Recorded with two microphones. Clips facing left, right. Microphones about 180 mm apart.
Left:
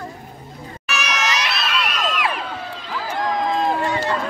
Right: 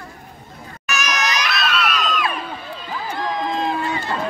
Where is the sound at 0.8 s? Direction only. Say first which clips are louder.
Right 1 dB; 30° left (ahead or behind).